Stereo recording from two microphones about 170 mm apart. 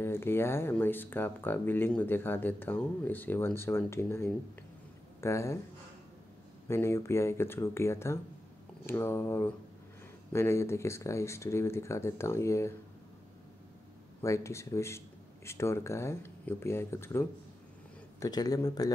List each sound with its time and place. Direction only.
0.0 s speech: 15° left (ahead or behind)
6.7 s speech: 15° left (ahead or behind)
14.2 s speech: 15° left (ahead or behind)